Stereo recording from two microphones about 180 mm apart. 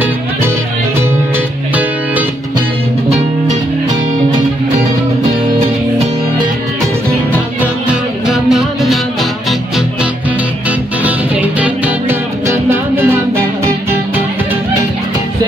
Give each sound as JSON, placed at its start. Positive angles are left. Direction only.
{"t": 7.9, "sound": "music", "side_deg": -5}
{"t": 11.6, "sound": "music", "side_deg": -15}